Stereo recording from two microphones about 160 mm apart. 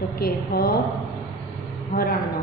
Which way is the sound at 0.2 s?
70° left (ahead or behind).